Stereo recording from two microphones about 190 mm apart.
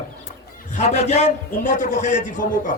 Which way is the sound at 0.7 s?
40° left (ahead or behind).